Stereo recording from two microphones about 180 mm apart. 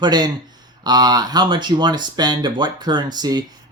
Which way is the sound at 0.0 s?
25° right (ahead or behind).